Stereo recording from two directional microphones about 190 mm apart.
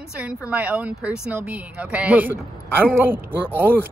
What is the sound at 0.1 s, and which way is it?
Speech, 5° right (ahead or behind).